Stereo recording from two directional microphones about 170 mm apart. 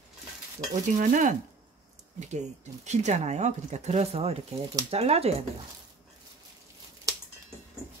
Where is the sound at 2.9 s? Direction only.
40° right (ahead or behind).